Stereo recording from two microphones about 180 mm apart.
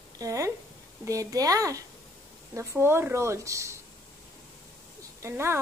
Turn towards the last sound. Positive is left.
turn(degrees=-15)  # may be behind; listen again after turning